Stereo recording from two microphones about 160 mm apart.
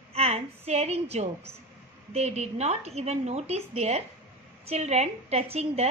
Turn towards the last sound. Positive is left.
turn(degrees=-40)  # may be behind; listen again after turning